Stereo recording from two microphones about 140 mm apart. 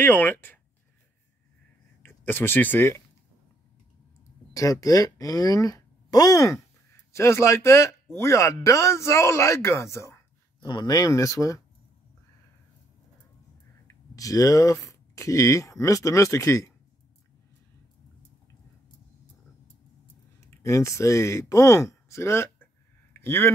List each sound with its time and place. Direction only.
0.0 s speech: 10° left (ahead or behind)
2.0 s speech: 15° left (ahead or behind)
4.6 s speech: 25° left (ahead or behind)
10.6 s speech: 30° left (ahead or behind)
14.1 s speech: 25° left (ahead or behind)
20.3 s speech: 20° left (ahead or behind)